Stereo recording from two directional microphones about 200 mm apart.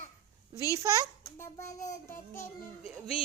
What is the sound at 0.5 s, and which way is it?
Speech, 15° right (ahead or behind).